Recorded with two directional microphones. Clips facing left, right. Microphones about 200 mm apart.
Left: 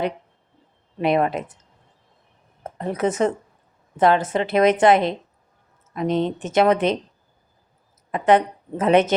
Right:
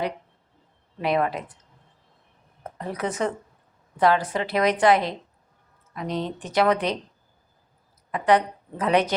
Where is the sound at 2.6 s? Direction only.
25° left (ahead or behind).